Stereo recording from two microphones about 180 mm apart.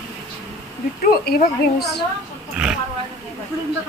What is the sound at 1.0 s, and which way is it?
Speech, 60° left (ahead or behind).